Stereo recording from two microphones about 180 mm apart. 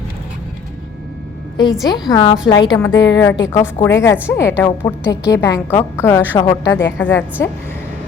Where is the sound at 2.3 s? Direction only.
25° left (ahead or behind).